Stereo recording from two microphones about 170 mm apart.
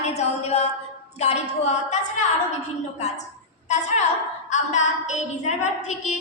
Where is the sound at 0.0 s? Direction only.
40° left (ahead or behind).